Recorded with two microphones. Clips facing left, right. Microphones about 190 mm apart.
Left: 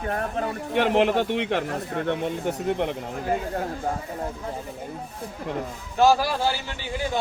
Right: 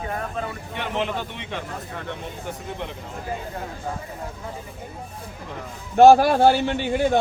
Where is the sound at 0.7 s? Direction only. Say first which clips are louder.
Left 8 dB; 60° left (ahead or behind).